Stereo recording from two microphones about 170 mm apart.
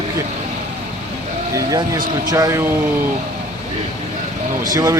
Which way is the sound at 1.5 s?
25° right (ahead or behind).